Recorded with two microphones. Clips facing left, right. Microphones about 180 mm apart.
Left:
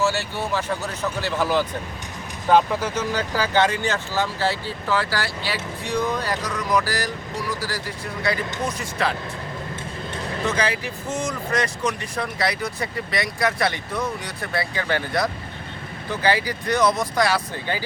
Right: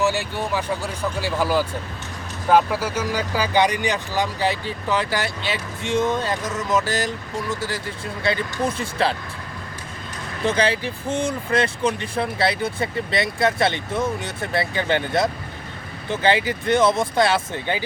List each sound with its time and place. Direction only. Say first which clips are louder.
0.0 s speech: right 1 dB; 15° right (ahead or behind)
10.4 s speech: right 4 dB; 30° right (ahead or behind)